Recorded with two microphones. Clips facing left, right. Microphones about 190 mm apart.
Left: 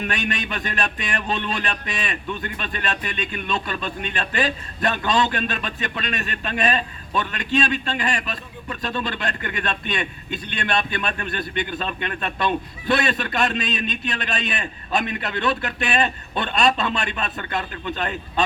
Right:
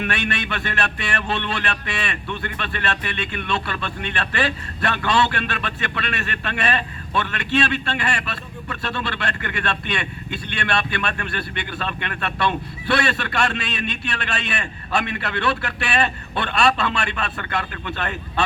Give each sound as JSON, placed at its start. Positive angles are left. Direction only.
{"t": 0.1, "sound": "a man's voice", "side_deg": 15}